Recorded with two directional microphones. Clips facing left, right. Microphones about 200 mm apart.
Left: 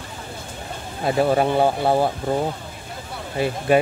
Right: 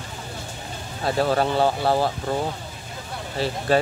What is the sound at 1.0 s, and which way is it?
Speech, 20° left (ahead or behind).